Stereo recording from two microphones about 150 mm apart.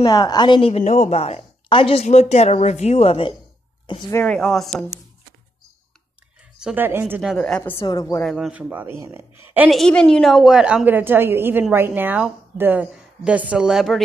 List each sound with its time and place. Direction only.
0.0 s a woman's voice: 25° left (ahead or behind); by 3.3 s 40° left (ahead or behind)
4.1 s a woman's voice: 5° left (ahead or behind)
6.6 s a woman's voice: 10° right (ahead or behind)
7.3 s a woman's voice: 5° left (ahead or behind)
7.7 s a woman's voice: 25° left (ahead or behind)
8.2 s a woman's voice: centre (ahead or behind)
9.7 s a woman's voice: 5° left (ahead or behind)